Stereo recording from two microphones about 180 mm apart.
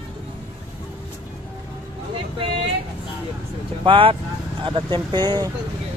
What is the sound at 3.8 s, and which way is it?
Speech, 30° right (ahead or behind).